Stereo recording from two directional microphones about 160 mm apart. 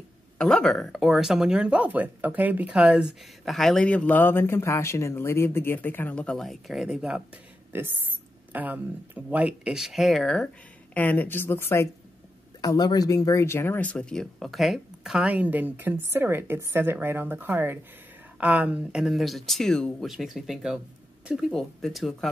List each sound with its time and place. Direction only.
0.4 s a woman's voice: 5° left (ahead or behind)